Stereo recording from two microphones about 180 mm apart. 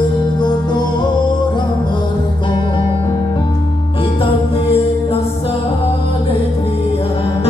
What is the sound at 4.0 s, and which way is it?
Music, 30° left (ahead or behind).